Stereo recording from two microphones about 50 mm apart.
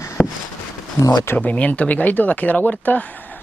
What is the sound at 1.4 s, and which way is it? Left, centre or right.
Speech, left.